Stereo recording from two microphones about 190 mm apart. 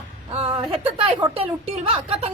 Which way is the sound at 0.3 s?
30° right (ahead or behind).